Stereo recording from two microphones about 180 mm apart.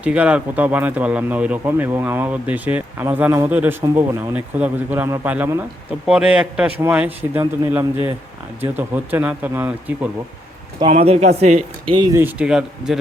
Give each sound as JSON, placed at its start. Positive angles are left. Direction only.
{"t": 0.0, "sound": "speech", "side_deg": -5}
{"t": 10.8, "sound": "speech", "side_deg": -35}
{"t": 11.9, "sound": "speech", "side_deg": -20}
{"t": 12.2, "sound": "speech", "side_deg": -5}